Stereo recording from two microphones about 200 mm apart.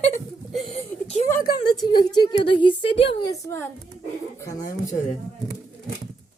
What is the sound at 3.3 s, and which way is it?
Speech, 15° left (ahead or behind).